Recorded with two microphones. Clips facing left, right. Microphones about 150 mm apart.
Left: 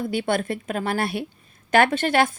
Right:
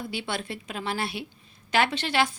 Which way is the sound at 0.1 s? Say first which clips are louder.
Left 9 dB; 50° left (ahead or behind).